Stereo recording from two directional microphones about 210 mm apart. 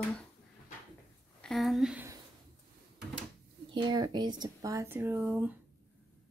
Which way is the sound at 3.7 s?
20° right (ahead or behind).